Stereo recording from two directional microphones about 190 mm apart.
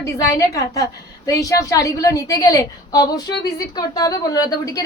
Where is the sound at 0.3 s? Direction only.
20° left (ahead or behind).